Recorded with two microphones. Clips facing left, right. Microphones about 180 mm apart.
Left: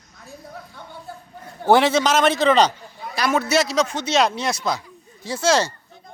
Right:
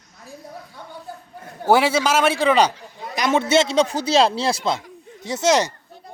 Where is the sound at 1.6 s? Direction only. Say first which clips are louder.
Left 1 dB; 10° right (ahead or behind).